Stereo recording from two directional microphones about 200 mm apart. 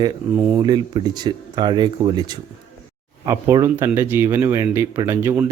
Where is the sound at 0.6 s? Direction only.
20° right (ahead or behind).